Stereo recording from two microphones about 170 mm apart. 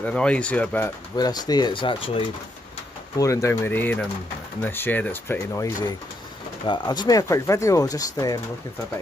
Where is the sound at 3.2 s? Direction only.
20° left (ahead or behind).